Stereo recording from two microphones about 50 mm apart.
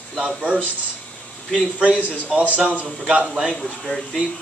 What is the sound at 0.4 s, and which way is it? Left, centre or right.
Speech, right.